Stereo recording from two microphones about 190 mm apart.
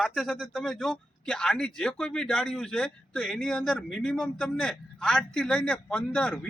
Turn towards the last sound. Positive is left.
turn(degrees=5)  # may be behind; listen again after turning